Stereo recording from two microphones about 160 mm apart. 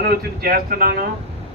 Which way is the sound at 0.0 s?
70° right (ahead or behind).